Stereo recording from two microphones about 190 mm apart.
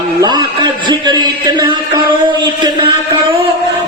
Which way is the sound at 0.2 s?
25° right (ahead or behind).